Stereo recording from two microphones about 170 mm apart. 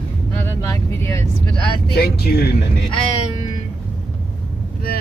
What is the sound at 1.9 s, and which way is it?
Speech, 65° left (ahead or behind).